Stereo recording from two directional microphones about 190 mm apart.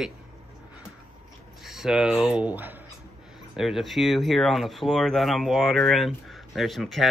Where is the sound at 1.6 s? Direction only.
Centre (ahead or behind).